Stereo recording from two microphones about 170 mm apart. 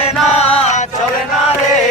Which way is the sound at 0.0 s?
40° left (ahead or behind).